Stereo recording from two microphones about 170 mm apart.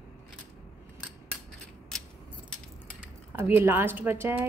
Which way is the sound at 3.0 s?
10° right (ahead or behind).